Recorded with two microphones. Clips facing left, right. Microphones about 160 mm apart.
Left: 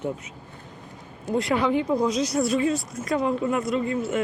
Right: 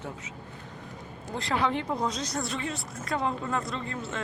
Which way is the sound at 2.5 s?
20° left (ahead or behind).